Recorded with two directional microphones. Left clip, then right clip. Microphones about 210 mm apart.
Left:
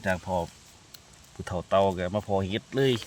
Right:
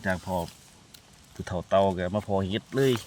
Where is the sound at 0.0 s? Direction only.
5° left (ahead or behind).